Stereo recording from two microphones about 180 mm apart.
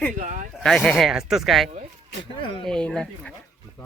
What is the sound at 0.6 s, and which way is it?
Speech, 5° left (ahead or behind).